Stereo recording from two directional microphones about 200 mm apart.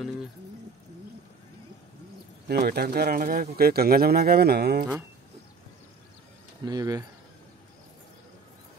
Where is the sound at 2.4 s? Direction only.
55° right (ahead or behind).